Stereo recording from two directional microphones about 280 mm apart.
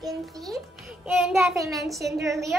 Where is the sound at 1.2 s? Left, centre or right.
Centre.